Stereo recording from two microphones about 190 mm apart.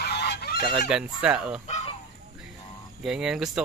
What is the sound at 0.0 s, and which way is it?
Goose, 60° left (ahead or behind).